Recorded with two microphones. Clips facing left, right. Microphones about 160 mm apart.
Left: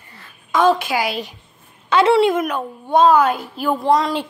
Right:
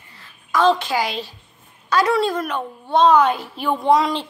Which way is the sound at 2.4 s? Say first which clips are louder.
Left 2 dB; 10° left (ahead or behind).